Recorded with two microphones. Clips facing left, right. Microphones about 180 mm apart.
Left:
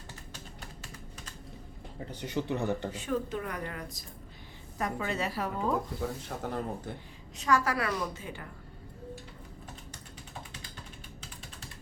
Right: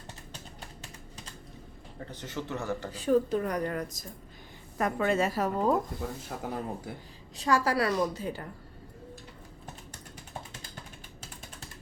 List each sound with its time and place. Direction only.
2.0 s speech: 15° left (ahead or behind)
2.9 s a woman's voice: 35° right (ahead or behind)
4.8 s a woman's voice: 55° right (ahead or behind)
6.0 s speech: 5° right (ahead or behind)
7.3 s a woman's voice: 30° right (ahead or behind)